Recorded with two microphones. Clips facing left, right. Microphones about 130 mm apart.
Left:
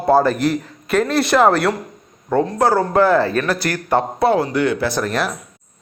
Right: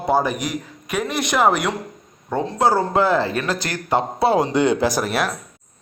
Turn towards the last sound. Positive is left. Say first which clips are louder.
# left 1 dB
turn(degrees=-10)  # may be behind; listen again after turning